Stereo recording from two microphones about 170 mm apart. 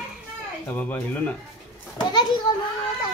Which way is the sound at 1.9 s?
25° left (ahead or behind).